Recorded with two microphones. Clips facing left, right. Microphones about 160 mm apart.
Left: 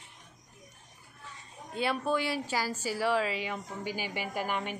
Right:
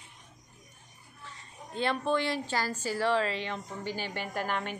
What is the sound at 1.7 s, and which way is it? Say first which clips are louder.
A woman's voice: right 1 dB; 10° left (ahead or behind).